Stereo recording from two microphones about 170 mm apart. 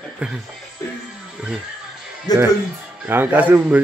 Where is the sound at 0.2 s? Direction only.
5° right (ahead or behind).